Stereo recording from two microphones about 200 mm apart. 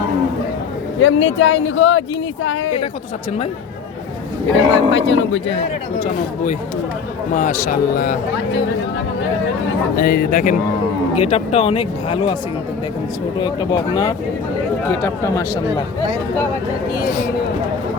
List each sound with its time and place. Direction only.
1.0 s speech: 75° left (ahead or behind)
4.5 s speech: 70° left (ahead or behind)
7.3 s a man's voice: 40° left (ahead or behind)
9.9 s a man's voice: 45° left (ahead or behind)
11.1 s speech: 30° left (ahead or behind)
13.4 s speech: 20° left (ahead or behind)